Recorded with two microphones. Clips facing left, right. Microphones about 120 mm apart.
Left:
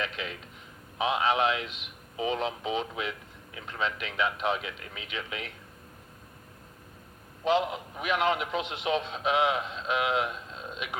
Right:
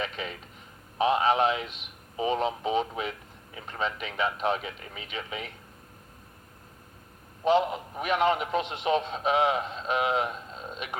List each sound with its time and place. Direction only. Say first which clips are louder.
0.0 s a man's voice: right 1 dB; 45° right (ahead or behind)
7.7 s a man's voice: right 2 dB; 45° right (ahead or behind)